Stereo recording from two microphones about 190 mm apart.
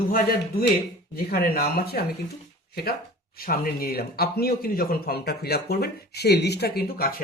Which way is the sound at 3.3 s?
50° left (ahead or behind).